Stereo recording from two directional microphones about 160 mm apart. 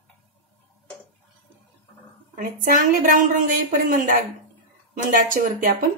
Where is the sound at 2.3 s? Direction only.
60° right (ahead or behind).